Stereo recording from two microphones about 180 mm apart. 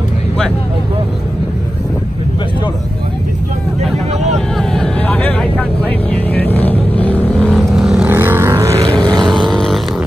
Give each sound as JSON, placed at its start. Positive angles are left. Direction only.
{"t": 4.6, "sound": "vehicle", "side_deg": 5}
{"t": 9.5, "sound": "vehicle", "side_deg": 0}